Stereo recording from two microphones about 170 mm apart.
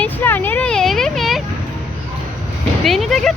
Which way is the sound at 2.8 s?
Centre (ahead or behind).